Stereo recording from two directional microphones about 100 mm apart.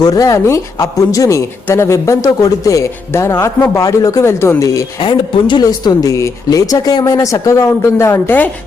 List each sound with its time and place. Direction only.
0.0 s speech: 35° left (ahead or behind)
4.9 s speech: 55° left (ahead or behind)
5.6 s speech: 40° left (ahead or behind)